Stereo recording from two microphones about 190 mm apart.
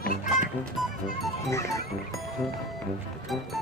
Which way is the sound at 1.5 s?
15° left (ahead or behind).